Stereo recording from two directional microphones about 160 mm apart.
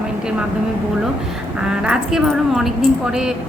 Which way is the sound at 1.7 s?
5° right (ahead or behind).